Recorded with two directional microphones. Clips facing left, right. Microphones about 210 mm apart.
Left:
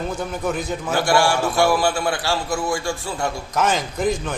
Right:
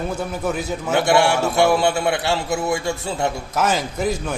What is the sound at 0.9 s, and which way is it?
A man's voice, 25° right (ahead or behind).